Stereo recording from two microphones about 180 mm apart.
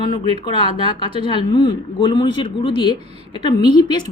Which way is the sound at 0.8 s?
25° left (ahead or behind).